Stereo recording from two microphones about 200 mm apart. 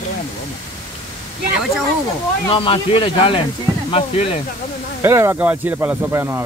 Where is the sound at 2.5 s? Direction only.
25° left (ahead or behind).